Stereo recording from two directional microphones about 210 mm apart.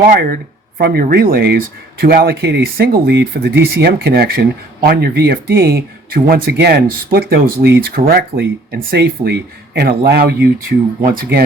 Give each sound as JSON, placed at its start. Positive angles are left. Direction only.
{"t": 0.1, "sound": "speech", "side_deg": -45}